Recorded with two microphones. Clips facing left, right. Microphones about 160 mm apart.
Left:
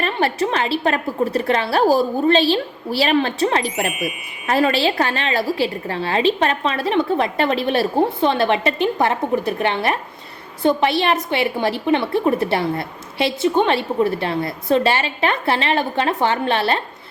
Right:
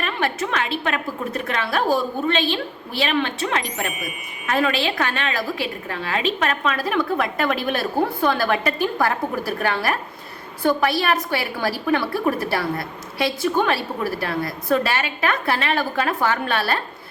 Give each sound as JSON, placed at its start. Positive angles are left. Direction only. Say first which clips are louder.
{"t": 0.0, "sound": "a woman's voice", "louder": "left 4 dB", "side_deg": 30}